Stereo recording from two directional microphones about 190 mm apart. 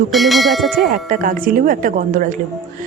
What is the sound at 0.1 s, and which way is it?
Bell, centre (ahead or behind).